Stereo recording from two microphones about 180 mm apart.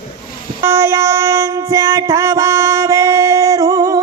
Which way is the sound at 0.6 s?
15° right (ahead or behind).